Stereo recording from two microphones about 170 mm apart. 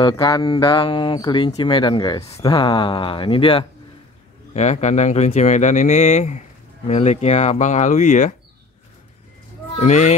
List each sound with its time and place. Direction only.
0.0 s speech: 30° left (ahead or behind)
4.6 s speech: 40° left (ahead or behind)
9.8 s speech: 45° left (ahead or behind)